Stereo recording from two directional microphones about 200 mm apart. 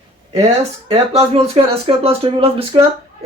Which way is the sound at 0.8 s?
30° right (ahead or behind).